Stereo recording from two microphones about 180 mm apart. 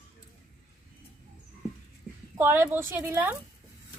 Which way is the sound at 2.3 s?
15° right (ahead or behind).